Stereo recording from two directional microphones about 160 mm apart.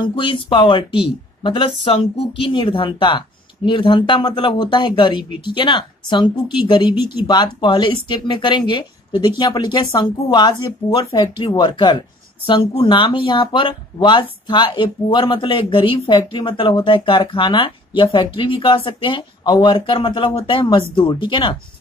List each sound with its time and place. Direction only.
0.0 s speech: 30° left (ahead or behind)